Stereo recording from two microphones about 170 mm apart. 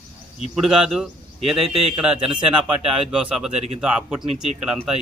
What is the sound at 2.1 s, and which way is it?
Speech, 30° right (ahead or behind).